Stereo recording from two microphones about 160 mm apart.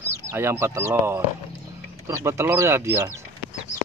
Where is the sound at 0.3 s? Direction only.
15° right (ahead or behind).